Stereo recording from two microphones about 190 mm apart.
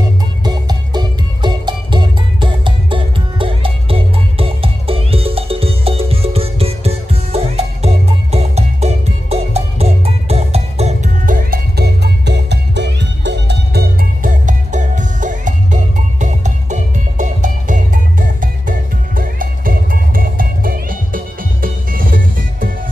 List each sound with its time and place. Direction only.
0.4 s music: 20° right (ahead or behind); by 22.7 s 50° right (ahead or behind)